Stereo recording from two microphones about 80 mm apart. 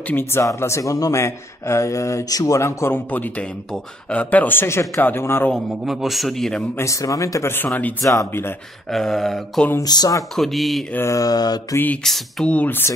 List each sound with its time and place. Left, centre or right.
0.0 s speech: left
3.1 s speech: left
5.9 s a man's voice: centre
6.8 s speech: left
7.5 s speech: left
8.0 s speech: left
8.3 s speech: left
8.9 s a man's voice: centre
9.8 s speech: left
10.3 s a man's voice: centre
11.1 s speech: left
11.7 s speech: left
12.0 s speech: centre
12.5 s speech: left